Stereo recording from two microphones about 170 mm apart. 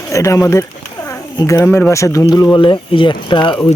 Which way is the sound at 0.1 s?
20° left (ahead or behind).